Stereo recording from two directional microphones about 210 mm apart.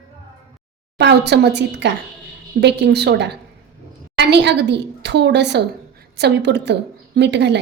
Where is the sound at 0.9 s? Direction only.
55° right (ahead or behind).